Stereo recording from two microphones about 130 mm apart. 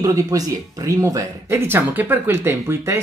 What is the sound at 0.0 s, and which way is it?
Speech, 25° right (ahead or behind).